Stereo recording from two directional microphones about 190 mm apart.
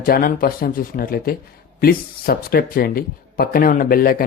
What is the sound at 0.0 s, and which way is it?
Speech, 50° left (ahead or behind).